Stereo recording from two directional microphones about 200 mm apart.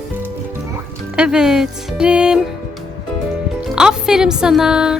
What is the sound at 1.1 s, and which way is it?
Speech, 5° right (ahead or behind).